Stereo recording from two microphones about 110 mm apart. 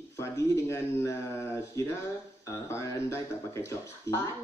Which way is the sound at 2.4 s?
25° left (ahead or behind).